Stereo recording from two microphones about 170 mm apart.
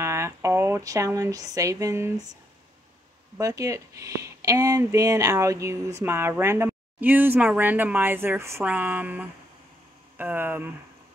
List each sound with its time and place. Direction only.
0.0 s speech: 15° right (ahead or behind)
3.3 s a woman's voice: 20° right (ahead or behind)